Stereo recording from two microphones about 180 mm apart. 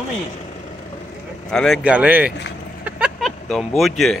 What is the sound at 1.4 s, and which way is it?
Speech, centre (ahead or behind).